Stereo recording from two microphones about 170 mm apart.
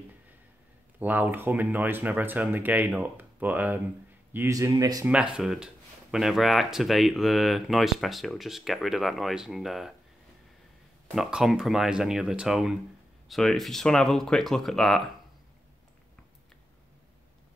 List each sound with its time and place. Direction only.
0.9 s a man's voice: 10° right (ahead or behind)
5.0 s speech: 5° right (ahead or behind)
11.1 s speech: centre (ahead or behind)